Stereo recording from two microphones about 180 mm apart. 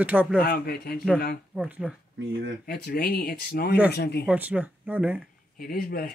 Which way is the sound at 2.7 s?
60° left (ahead or behind).